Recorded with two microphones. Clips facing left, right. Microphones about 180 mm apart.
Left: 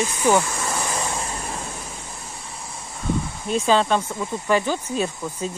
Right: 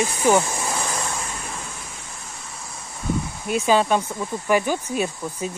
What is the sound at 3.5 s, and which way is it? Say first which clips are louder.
Speech: even; 10° right (ahead or behind).